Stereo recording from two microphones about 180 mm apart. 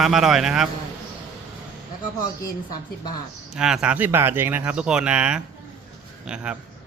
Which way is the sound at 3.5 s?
5° right (ahead or behind).